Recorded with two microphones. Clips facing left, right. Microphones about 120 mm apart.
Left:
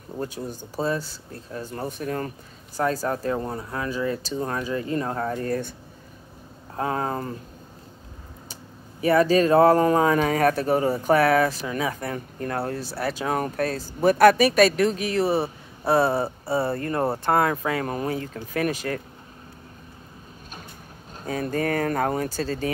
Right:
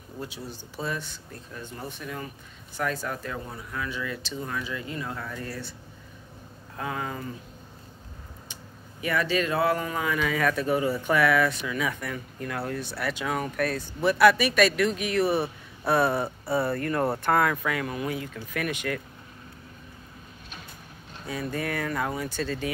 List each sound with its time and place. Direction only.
0.2 s speech: 45° left (ahead or behind)
2.8 s speech: 35° left (ahead or behind)
6.8 s speech: 35° left (ahead or behind)
9.0 s speech: 35° left (ahead or behind)
14.0 s speech: 45° left (ahead or behind)
21.2 s speech: 45° left (ahead or behind)